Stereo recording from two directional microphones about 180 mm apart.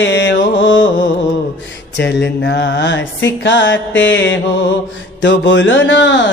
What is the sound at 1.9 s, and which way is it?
Mantra, 75° left (ahead or behind).